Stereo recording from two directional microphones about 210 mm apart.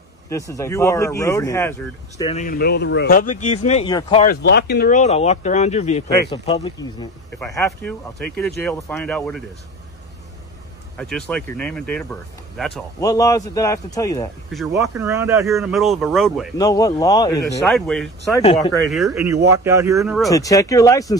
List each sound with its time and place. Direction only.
0.3 s speech: 15° left (ahead or behind)
2.2 s speech: 35° left (ahead or behind)
4.3 s speech: 50° left (ahead or behind); by 6.6 s 30° left (ahead or behind)
6.6 s speech: 20° left (ahead or behind)
11.0 s speech: 5° left (ahead or behind)
13.0 s speech: 15° left (ahead or behind)
15.0 s speech: 15° right (ahead or behind)
15.4 s speech: centre (ahead or behind)
16.5 s speech: 15° left (ahead or behind)
17.6 s speech: centre (ahead or behind)
19.2 s speech: 15° right (ahead or behind)
20.2 s speech: 15° left (ahead or behind)